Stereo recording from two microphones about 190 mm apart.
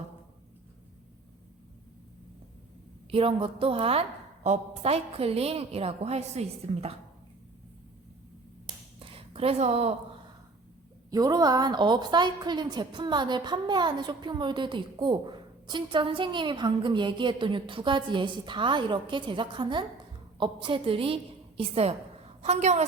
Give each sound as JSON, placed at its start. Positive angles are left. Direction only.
{"t": 3.1, "sound": "a woman's voice", "side_deg": -30}
{"t": 9.0, "sound": "a sound", "side_deg": -30}
{"t": 11.1, "sound": "a woman's voice", "side_deg": -20}